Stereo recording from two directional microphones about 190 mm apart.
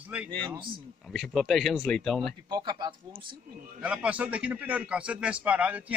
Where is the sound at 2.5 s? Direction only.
20° right (ahead or behind).